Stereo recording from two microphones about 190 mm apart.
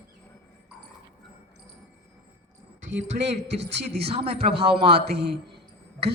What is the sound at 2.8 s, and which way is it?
Speech, 80° right.